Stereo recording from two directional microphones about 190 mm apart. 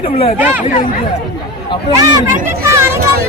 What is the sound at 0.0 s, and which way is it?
Speech, 35° left (ahead or behind).